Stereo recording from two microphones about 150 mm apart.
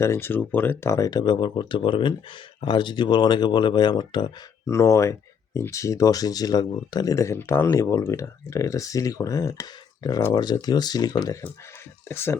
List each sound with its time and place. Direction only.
0.0 s speech: 15° left (ahead or behind)